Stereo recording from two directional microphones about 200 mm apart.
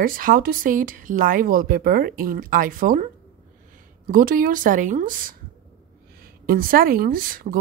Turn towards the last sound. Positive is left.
turn(degrees=-45)  # may be behind; listen again after turning